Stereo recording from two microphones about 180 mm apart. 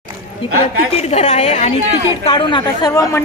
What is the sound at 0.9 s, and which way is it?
A woman's voice, 40° left (ahead or behind).